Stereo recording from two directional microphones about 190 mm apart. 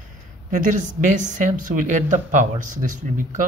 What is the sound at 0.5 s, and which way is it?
Speech, 40° right (ahead or behind).